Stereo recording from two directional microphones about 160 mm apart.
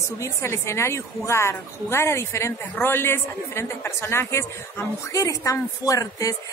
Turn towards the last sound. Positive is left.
turn(degrees=20)  # may be behind; listen again after turning